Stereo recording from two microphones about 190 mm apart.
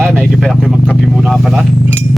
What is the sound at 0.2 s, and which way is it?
Vehicle, centre (ahead or behind).